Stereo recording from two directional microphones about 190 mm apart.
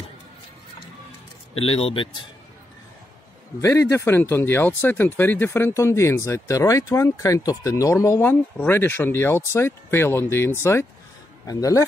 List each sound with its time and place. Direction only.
1.5 s a man's voice: 30° left (ahead or behind)
3.6 s speech: 15° left (ahead or behind)